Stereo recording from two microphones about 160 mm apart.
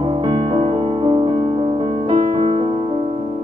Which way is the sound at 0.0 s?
30° right (ahead or behind).